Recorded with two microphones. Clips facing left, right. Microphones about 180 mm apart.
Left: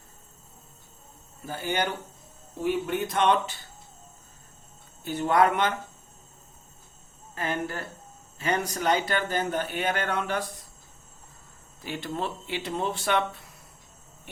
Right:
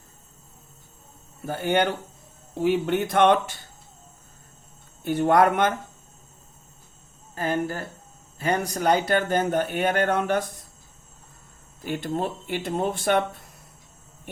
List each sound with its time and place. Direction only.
1.5 s speech: 60° right (ahead or behind)
5.0 s speech: 50° right (ahead or behind)
7.3 s speech: 40° right (ahead or behind)
11.8 s speech: 50° right (ahead or behind)